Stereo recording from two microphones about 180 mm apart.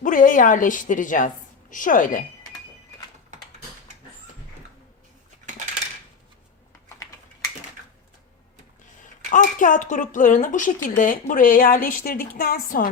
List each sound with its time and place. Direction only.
0.0 s a woman's voice: 45° left (ahead or behind)
9.3 s a woman's voice: 45° left (ahead or behind)